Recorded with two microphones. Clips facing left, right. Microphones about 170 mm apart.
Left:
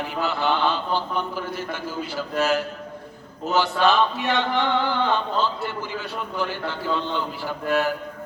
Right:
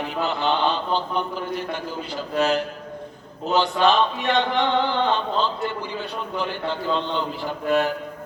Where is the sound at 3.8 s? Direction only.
20° right (ahead or behind).